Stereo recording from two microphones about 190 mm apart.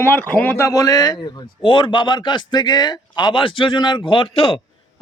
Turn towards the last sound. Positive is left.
turn(degrees=30)  # may be behind; listen again after turning